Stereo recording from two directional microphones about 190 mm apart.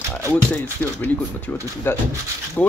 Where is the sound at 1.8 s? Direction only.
10° left (ahead or behind).